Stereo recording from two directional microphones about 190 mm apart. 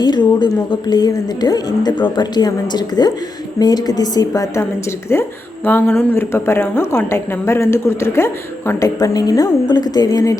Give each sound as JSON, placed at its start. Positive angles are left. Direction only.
{"t": 0.0, "sound": "a woman's voice", "side_deg": 25}
{"t": 5.6, "sound": "a woman's voice", "side_deg": 10}